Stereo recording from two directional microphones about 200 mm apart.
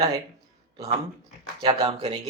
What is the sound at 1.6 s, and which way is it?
Speech, 30° right (ahead or behind).